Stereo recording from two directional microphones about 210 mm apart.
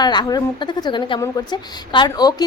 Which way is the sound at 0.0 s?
20° left (ahead or behind).